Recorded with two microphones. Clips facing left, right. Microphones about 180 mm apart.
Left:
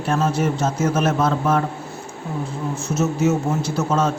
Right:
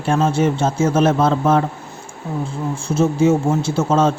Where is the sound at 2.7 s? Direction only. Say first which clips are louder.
Right 4 dB; 30° right (ahead or behind).